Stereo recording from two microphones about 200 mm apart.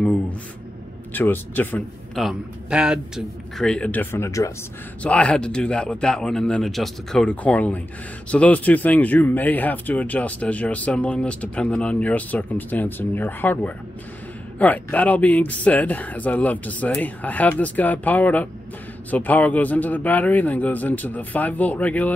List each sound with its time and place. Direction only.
0.0 s a sound: 5° left (ahead or behind)
1.1 s speech: 10° left (ahead or behind)
2.2 s a man's voice: 5° right (ahead or behind)